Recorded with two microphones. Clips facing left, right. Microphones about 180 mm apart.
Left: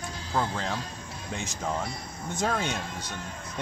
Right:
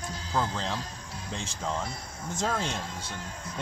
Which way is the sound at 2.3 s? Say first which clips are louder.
Left 2 dB; 10° left (ahead or behind).